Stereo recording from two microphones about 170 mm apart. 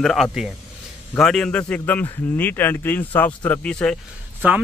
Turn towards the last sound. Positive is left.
turn(degrees=-10)  # may be behind; listen again after turning